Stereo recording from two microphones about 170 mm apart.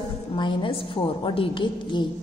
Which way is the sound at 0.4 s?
30° left (ahead or behind).